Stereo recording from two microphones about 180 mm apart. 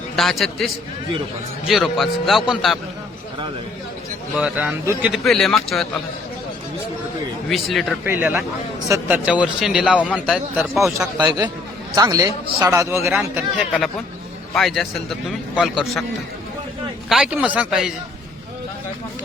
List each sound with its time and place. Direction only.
0.2 s a man's voice: centre (ahead or behind)
4.4 s a man's voice: 5° right (ahead or behind)
7.5 s a man's voice: centre (ahead or behind)
8.0 s a man's voice: 10° right (ahead or behind)
11.2 s a man's voice: 20° right (ahead or behind); by 16.0 s centre (ahead or behind)
17.1 s a man's voice: 5° right (ahead or behind)